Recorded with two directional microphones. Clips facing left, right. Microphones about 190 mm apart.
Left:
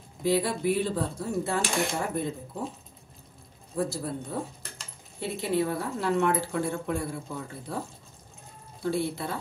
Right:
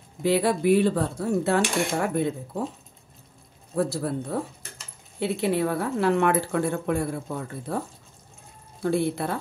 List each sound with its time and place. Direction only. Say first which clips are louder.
0.2 s speech: right 4 dB; 65° right (ahead or behind)
3.7 s a woman's voice: right 5 dB; 65° right (ahead or behind)
9.1 s a woman's voice: right 5 dB; 60° right (ahead or behind)